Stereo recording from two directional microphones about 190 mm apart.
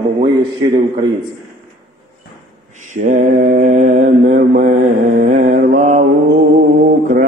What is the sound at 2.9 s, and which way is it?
Mantra, 40° right (ahead or behind).